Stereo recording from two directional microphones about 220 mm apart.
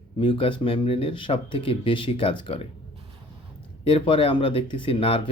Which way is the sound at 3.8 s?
25° left (ahead or behind).